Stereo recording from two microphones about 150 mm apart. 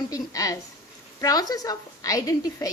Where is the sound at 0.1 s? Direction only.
25° left (ahead or behind).